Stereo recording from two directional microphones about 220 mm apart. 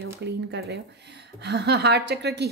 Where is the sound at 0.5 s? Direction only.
50° right (ahead or behind).